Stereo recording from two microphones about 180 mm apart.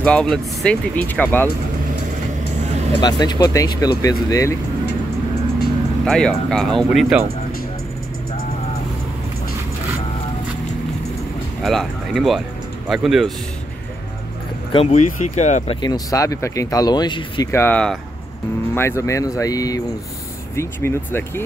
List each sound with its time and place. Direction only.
0.0 s speech: 5° left (ahead or behind)
3.0 s speech: 25° left (ahead or behind)
6.0 s speech: 5° left (ahead or behind)
11.6 s speech: centre (ahead or behind)
14.7 s speech: 35° left (ahead or behind); by 21.2 s 15° left (ahead or behind)